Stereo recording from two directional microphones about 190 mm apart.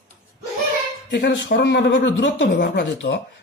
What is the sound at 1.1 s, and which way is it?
Speech, 65° left (ahead or behind).